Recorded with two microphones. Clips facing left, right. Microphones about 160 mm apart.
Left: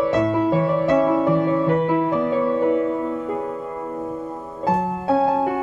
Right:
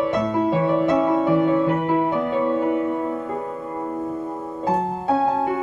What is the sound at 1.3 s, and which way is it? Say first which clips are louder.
Music: even; 15° right (ahead or behind).